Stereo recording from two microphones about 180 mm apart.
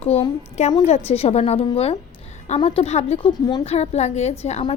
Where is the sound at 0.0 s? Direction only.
35° left (ahead or behind).